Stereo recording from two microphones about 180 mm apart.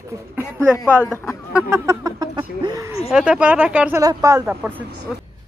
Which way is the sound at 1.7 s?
20° right (ahead or behind).